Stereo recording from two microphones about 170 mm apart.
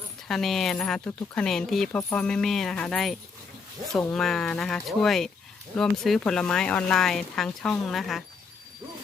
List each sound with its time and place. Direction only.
0.3 s speech: centre (ahead or behind)
2.0 s speech: 15° left (ahead or behind)
2.2 s speech: 5° left (ahead or behind)